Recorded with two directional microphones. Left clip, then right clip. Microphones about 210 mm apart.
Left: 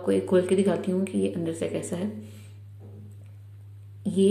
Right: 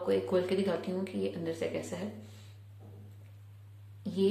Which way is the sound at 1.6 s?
15° left (ahead or behind).